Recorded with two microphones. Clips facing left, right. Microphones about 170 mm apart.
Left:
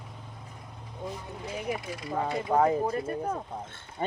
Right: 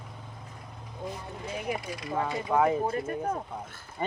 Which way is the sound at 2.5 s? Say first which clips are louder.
Left 1 dB; 35° left (ahead or behind).